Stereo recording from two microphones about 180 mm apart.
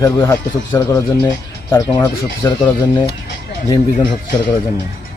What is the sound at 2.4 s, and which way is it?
Speech, 15° left (ahead or behind).